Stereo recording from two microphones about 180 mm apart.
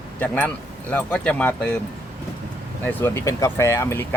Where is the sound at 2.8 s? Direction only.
10° left (ahead or behind).